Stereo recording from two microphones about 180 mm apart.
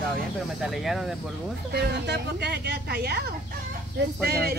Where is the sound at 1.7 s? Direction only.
65° right (ahead or behind).